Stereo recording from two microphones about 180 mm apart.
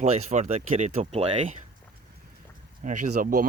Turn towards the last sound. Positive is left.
turn(degrees=-50)  # may be behind; listen again after turning